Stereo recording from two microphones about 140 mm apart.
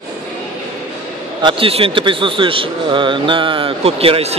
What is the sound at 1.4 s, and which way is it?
A man's voice, 40° right (ahead or behind).